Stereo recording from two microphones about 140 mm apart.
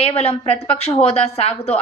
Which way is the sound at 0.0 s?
45° left (ahead or behind).